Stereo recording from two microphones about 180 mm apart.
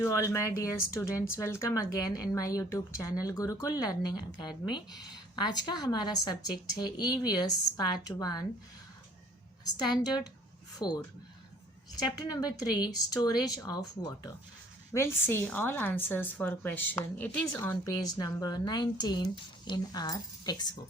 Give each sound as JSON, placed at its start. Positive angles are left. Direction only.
{"t": 0.0, "sound": "speech", "side_deg": 15}
{"t": 9.6, "sound": "a woman's voice", "side_deg": 25}